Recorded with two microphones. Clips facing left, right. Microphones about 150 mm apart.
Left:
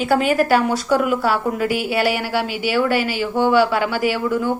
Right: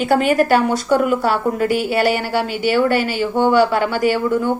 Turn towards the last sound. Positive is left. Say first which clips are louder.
# right 3 dB
turn(degrees=5)  # may be behind; listen again after turning